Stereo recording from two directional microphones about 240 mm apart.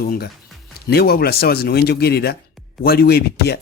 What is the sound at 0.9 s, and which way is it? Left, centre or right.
Speech, left.